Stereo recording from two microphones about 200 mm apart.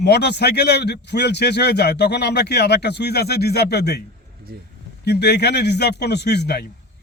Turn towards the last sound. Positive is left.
turn(degrees=55)  # may be behind; listen again after turning